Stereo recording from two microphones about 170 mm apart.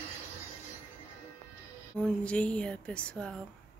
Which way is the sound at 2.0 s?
5° left (ahead or behind).